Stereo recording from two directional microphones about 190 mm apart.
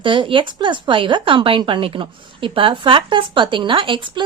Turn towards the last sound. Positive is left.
turn(degrees=-25)  # may be behind; listen again after turning